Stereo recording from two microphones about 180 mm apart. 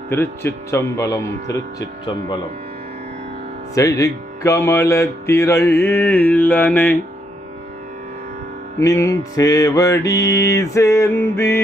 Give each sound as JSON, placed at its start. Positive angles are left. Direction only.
{"t": 0.1, "sound": "music", "side_deg": 15}
{"t": 3.7, "sound": "music", "side_deg": 20}
{"t": 8.7, "sound": "music", "side_deg": 15}